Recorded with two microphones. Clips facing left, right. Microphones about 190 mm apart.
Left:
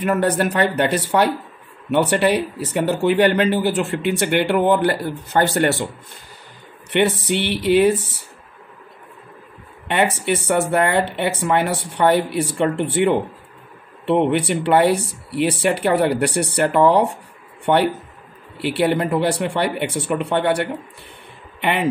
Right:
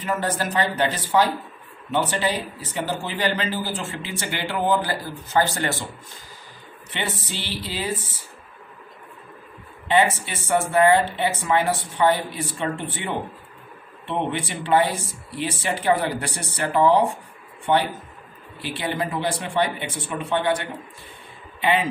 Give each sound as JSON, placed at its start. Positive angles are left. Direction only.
{"t": 0.0, "sound": "speech", "side_deg": 65}
{"t": 6.9, "sound": "speech", "side_deg": 70}
{"t": 9.8, "sound": "speech", "side_deg": 65}